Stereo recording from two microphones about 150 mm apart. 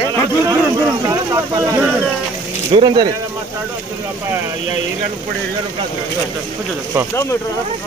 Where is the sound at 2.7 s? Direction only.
30° right (ahead or behind).